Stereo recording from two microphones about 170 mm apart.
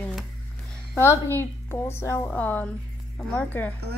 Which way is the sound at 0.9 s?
15° left (ahead or behind).